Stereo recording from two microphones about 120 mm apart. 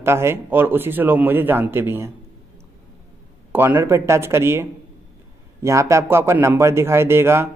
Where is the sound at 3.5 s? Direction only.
20° right (ahead or behind).